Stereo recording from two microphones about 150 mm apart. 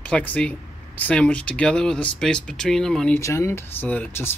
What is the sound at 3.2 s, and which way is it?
Speech, 20° left (ahead or behind).